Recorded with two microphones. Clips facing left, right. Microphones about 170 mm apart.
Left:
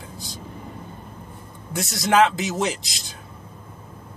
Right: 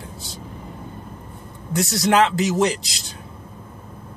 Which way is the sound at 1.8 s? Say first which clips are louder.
Right 1 dB; centre (ahead or behind).